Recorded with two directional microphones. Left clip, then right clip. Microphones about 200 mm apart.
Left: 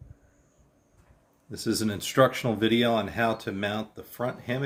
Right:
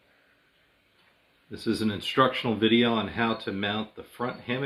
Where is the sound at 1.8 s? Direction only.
65° left (ahead or behind).